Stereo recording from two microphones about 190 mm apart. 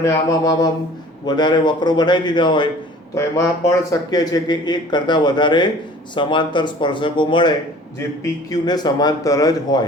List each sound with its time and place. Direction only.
0.0 s a man's voice: 20° left (ahead or behind)